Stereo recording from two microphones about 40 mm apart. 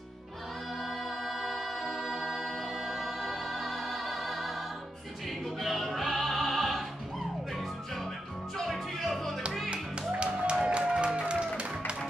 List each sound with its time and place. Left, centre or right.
0.8 s a capella: centre
5.4 s music: centre
9.7 s music: right